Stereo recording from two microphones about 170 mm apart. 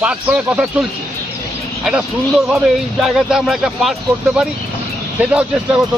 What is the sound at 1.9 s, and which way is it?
Speech, 5° right (ahead or behind).